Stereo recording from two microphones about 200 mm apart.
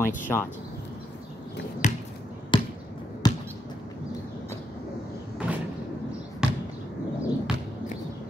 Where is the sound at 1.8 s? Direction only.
40° left (ahead or behind).